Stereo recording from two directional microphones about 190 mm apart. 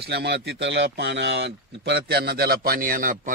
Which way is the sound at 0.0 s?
60° right (ahead or behind).